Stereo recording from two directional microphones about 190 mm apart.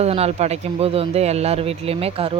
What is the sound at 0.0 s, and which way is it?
Speech, 35° right (ahead or behind).